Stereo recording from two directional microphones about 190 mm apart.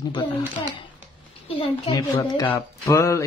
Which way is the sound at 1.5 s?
20° left (ahead or behind).